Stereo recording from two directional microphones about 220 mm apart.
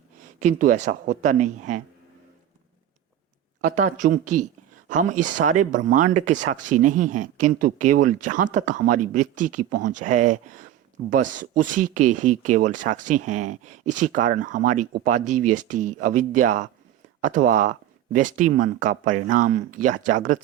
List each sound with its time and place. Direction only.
0.3 s speech: 35° right (ahead or behind)
3.6 s speech: 35° right (ahead or behind)